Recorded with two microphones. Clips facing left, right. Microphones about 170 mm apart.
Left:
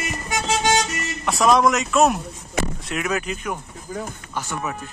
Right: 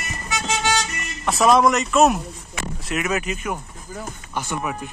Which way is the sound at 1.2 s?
Centre (ahead or behind).